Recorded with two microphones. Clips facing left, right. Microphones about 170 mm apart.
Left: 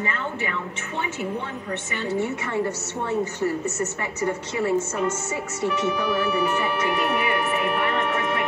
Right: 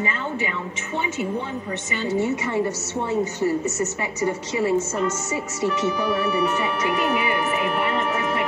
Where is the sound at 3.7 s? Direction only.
90° right.